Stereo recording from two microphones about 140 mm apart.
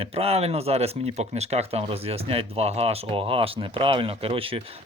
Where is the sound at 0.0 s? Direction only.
45° right (ahead or behind).